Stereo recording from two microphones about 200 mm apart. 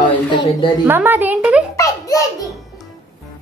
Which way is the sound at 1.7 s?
15° left (ahead or behind).